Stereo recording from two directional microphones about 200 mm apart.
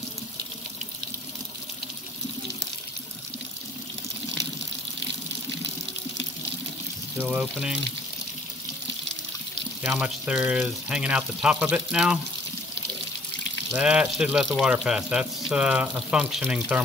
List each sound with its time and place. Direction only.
7.2 s speech: 5° right (ahead or behind)
9.8 s speech: 5° right (ahead or behind)
13.7 s speech: 5° right (ahead or behind)